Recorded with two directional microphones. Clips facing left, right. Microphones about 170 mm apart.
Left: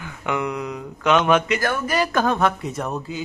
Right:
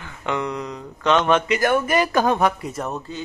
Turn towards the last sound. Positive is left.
turn(degrees=0)  # may be behind; listen again after turning